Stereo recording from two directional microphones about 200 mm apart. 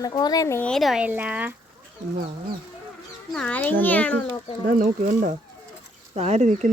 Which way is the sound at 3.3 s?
5° left (ahead or behind).